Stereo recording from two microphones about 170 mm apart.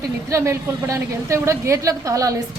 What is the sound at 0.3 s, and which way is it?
A woman's voice, 15° right (ahead or behind).